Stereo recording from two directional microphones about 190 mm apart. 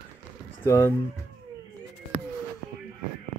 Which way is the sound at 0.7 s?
15° left (ahead or behind).